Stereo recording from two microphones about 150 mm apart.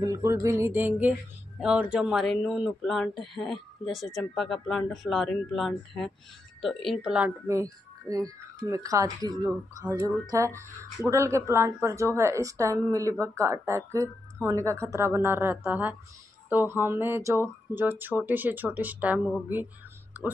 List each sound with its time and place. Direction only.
0.0 s speech: 20° right (ahead or behind)
7.4 s speech: 20° right (ahead or behind)